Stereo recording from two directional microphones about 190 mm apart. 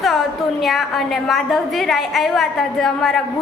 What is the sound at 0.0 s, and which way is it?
A woman's voice, centre (ahead or behind).